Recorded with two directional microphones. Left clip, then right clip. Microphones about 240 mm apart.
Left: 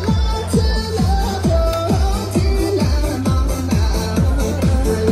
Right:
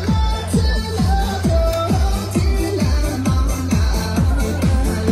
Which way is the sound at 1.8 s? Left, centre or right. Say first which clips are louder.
Left 2 dB; left.